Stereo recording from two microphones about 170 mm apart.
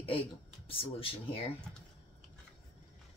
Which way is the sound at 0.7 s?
35° left (ahead or behind).